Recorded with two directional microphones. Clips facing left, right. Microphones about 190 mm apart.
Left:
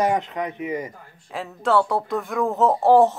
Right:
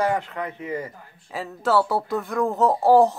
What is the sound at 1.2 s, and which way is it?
Speech, centre (ahead or behind).